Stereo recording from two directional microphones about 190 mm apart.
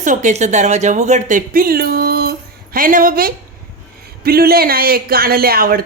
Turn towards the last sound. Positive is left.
turn(degrees=-50)  # may be behind; listen again after turning